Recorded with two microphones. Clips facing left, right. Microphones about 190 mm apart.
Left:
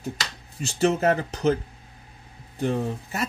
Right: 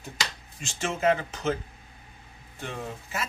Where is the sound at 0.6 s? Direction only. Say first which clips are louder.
Left 5 dB; 40° left (ahead or behind).